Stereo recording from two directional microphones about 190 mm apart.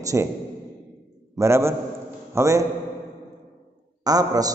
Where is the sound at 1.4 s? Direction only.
15° right (ahead or behind).